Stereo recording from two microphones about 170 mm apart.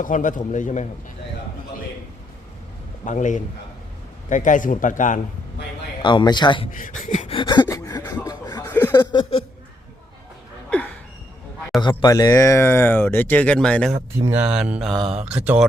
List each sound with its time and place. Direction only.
0.0 s speech: 50° left (ahead or behind)
3.0 s speech: 45° left (ahead or behind)
6.0 s a man's voice: 30° left (ahead or behind)
6.7 s speech: 50° left (ahead or behind)
7.4 s gasp: 25° left (ahead or behind)
8.1 s a sound: 20° left (ahead or behind)
8.7 s chuckle: 10° left (ahead or behind)
9.0 s a man's voice: 25° left (ahead or behind)
11.8 s speech: 25° left (ahead or behind); by 13.9 s 5° left (ahead or behind)
13.9 s speech: 10° right (ahead or behind)